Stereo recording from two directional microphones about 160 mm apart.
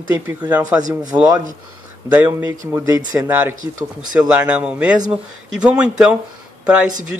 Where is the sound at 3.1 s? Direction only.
10° right (ahead or behind).